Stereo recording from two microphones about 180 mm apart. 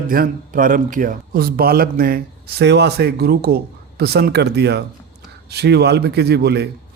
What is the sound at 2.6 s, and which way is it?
A man's voice, 70° right (ahead or behind).